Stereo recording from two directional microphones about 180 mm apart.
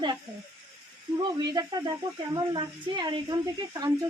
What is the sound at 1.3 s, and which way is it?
Speech, 20° right (ahead or behind).